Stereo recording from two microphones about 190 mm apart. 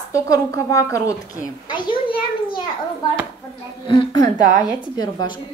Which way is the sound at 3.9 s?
25° left (ahead or behind).